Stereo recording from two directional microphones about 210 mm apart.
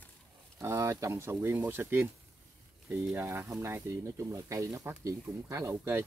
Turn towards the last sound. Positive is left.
turn(degrees=-15)  # may be behind; listen again after turning